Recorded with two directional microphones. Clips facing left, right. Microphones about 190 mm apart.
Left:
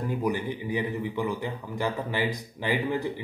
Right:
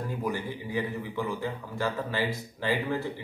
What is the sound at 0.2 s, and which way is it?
A man's voice, 15° left (ahead or behind).